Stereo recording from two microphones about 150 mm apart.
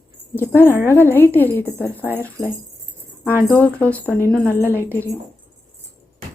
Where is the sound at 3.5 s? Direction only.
10° left (ahead or behind).